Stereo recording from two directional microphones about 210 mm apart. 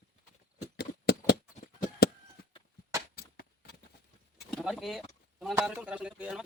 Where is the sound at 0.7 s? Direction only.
50° left (ahead or behind).